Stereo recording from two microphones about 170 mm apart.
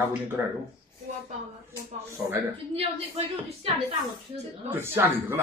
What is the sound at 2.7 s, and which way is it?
Speech, 35° right (ahead or behind).